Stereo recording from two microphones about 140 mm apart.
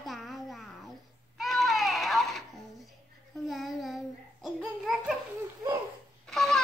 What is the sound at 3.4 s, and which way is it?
Child singing, centre (ahead or behind).